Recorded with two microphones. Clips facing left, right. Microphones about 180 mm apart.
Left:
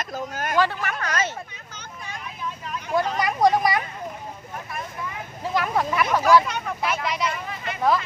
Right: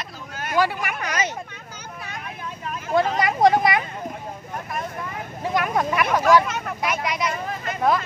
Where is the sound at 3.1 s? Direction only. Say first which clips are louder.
Right 1 dB; 25° right (ahead or behind).